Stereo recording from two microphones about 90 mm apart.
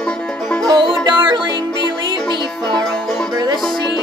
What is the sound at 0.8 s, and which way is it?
Music, 70° right (ahead or behind).